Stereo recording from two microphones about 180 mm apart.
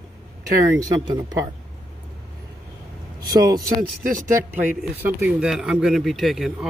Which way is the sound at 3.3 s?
20° right (ahead or behind).